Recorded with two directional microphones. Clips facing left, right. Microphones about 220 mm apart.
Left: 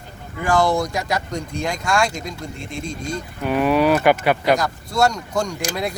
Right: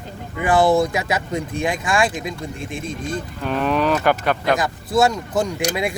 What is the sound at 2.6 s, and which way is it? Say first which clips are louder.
Speech: right 1 dB; 50° right (ahead or behind).